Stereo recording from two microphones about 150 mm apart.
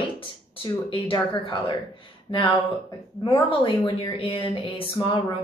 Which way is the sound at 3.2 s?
30° left (ahead or behind).